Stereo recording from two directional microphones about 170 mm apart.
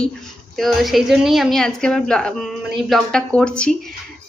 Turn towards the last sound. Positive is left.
turn(degrees=5)  # may be behind; listen again after turning